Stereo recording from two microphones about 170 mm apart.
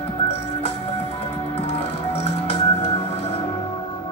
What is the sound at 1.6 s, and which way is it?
Music, 35° left (ahead or behind).